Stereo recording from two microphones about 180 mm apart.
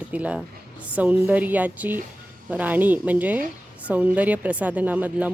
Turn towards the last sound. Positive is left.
turn(degrees=-10)  # may be behind; listen again after turning